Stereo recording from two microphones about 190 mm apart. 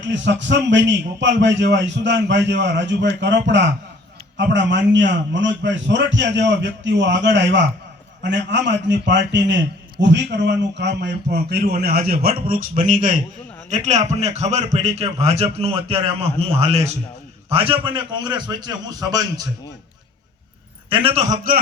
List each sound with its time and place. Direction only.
0.0 s a man's voice: 70° right (ahead or behind); by 19.5 s 20° right (ahead or behind)
20.9 s a man's voice: 30° right (ahead or behind); by 21.6 s 45° right (ahead or behind)